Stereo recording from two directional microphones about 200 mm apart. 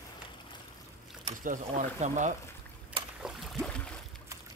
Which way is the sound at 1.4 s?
40° right (ahead or behind).